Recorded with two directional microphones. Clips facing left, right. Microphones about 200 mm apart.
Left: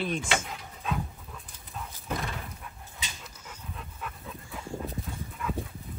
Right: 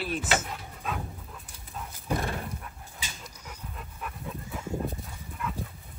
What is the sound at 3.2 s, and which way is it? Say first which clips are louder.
Dog: right 1 dB; 10° right (ahead or behind).